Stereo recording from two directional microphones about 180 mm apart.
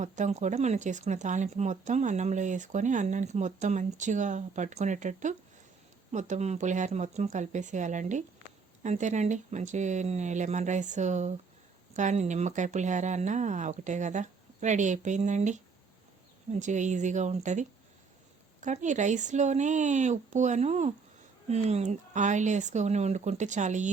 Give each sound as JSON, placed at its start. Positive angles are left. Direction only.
{"t": 0.0, "sound": "speech", "side_deg": -40}